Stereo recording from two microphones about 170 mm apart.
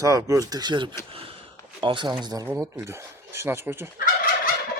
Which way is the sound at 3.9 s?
60° left (ahead or behind).